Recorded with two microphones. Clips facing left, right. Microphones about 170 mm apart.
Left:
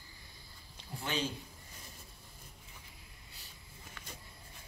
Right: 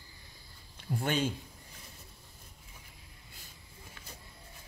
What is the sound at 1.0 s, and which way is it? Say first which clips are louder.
Speech: right 5 dB; 55° right (ahead or behind).